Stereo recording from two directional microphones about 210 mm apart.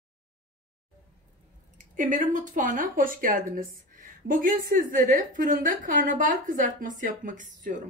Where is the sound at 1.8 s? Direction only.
35° right (ahead or behind).